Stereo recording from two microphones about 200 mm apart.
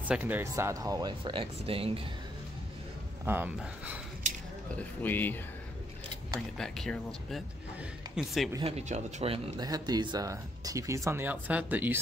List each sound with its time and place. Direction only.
0.1 s speech: 10° right (ahead or behind); by 2.0 s 30° right (ahead or behind)
3.3 s speech: 10° right (ahead or behind)
4.7 s speech: 10° left (ahead or behind)
6.6 s speech: 5° left (ahead or behind)
8.6 s speech: 35° right (ahead or behind); by 12.0 s 10° right (ahead or behind)